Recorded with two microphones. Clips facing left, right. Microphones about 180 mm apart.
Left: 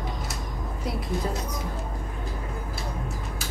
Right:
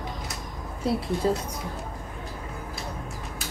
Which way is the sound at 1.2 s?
30° right (ahead or behind).